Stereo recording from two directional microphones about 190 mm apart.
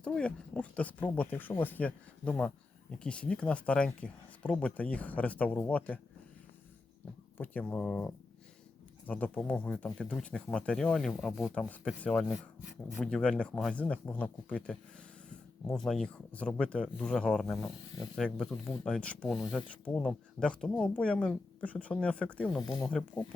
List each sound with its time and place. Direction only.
0.0 s speech: 5° left (ahead or behind)
7.3 s speech: 10° left (ahead or behind)
22.6 s speech: 20° left (ahead or behind)